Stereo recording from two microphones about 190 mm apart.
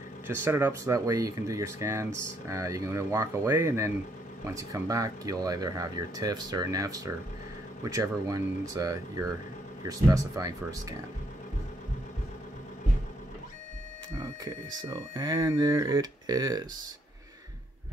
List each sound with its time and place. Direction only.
0.3 s speech: 10° right (ahead or behind)
14.2 s speech: 20° right (ahead or behind)